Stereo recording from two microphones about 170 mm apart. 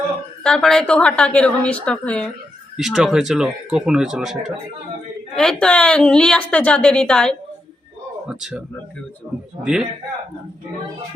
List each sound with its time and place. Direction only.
0.4 s a woman's voice: 5° left (ahead or behind)